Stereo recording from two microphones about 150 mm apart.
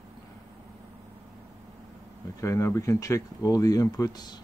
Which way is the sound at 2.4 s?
20° left (ahead or behind).